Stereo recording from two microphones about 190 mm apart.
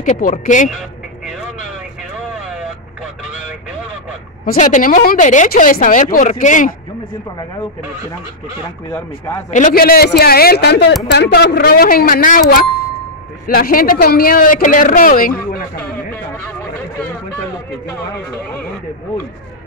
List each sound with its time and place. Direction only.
0.0 s speech: 40° left (ahead or behind)
4.5 s speech: 40° left (ahead or behind)
8.9 s speech: 15° left (ahead or behind)
9.5 s speech: 40° left (ahead or behind)